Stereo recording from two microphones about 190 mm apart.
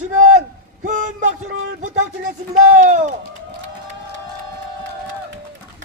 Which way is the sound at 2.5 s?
40° right (ahead or behind).